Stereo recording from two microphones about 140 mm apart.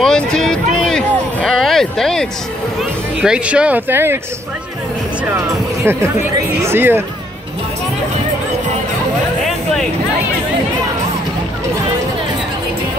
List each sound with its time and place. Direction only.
0.0 s a sound: 5° left (ahead or behind)
2.8 s speech: 5° right (ahead or behind)
5.9 s speech: 20° right (ahead or behind)